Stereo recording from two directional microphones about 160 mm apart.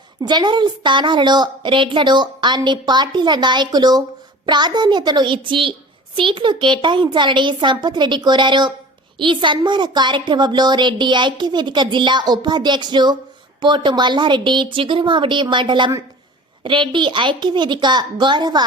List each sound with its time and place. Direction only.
0.2 s a woman's voice: 30° right (ahead or behind)